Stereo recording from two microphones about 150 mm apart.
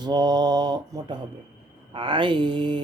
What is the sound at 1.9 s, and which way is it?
Mantra, 30° right (ahead or behind).